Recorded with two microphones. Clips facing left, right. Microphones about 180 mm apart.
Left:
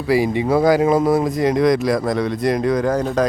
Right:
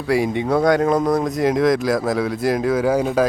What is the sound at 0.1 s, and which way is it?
Speech, centre (ahead or behind).